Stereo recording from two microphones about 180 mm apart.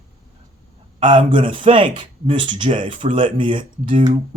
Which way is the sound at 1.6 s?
30° right (ahead or behind).